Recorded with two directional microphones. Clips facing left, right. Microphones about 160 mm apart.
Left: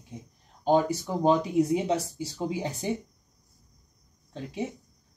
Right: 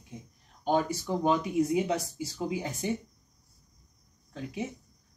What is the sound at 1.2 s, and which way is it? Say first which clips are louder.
Speech: left 4 dB; 30° left (ahead or behind).